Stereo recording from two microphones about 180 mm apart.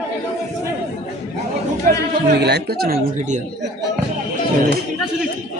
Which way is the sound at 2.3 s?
65° right (ahead or behind).